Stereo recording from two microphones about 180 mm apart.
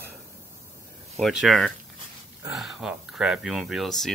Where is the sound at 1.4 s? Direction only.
Centre (ahead or behind).